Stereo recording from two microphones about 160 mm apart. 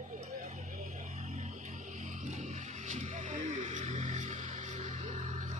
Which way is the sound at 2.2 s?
45° right (ahead or behind).